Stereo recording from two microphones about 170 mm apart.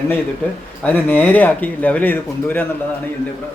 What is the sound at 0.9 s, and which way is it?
Speech, 10° left (ahead or behind).